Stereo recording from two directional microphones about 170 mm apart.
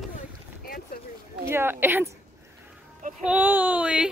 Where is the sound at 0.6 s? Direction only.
60° left (ahead or behind).